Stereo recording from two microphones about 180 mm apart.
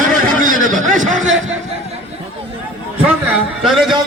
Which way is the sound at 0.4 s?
45° right (ahead or behind).